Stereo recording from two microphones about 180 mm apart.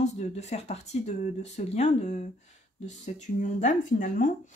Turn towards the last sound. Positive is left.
turn(degrees=45)  # may be behind; listen again after turning